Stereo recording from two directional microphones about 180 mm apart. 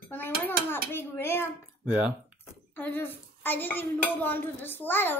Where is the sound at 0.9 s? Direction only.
10° left (ahead or behind).